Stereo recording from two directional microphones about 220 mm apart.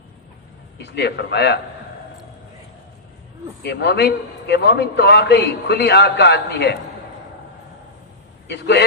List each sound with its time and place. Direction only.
0.8 s a man's voice: 50° left (ahead or behind)
3.6 s a man's voice: 50° left (ahead or behind)
8.4 s a man's voice: 50° left (ahead or behind)